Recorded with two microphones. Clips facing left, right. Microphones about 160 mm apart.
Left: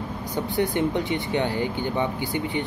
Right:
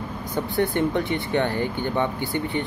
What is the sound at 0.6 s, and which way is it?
Speech, 15° left (ahead or behind).